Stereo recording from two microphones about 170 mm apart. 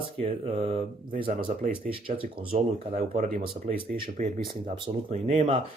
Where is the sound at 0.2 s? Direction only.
35° right (ahead or behind).